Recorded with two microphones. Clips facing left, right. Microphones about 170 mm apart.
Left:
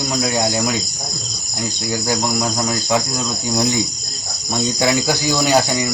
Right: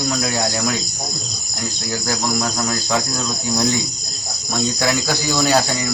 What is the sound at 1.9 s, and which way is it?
Cricket, 15° left (ahead or behind).